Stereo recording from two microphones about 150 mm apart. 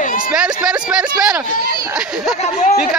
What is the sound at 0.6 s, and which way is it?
Speech, 5° right (ahead or behind).